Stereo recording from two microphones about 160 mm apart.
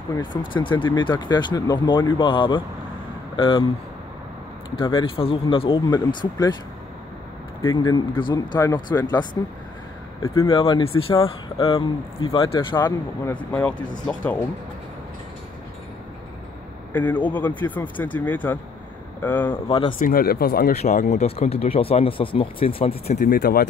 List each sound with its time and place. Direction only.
0.2 s speech: 30° left (ahead or behind)
4.7 s speech: 30° left (ahead or behind)
7.7 s speech: 25° left (ahead or behind)
10.5 s speech: 35° left (ahead or behind)
12.8 s speech: 10° left (ahead or behind)
16.9 s speech: 10° left (ahead or behind)
19.5 s speech: 30° left (ahead or behind)
20.0 s speech: 65° left (ahead or behind)
20.7 s speech: 45° left (ahead or behind)
23.1 s speech: 65° left (ahead or behind)